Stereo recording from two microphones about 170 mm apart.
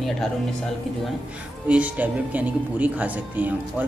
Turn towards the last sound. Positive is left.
turn(degrees=-10)  # may be behind; listen again after turning